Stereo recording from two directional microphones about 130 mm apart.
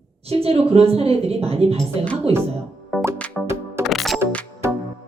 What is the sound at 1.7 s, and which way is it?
Speech, 10° left (ahead or behind).